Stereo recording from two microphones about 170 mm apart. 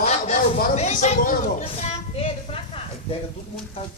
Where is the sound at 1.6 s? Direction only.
35° left (ahead or behind).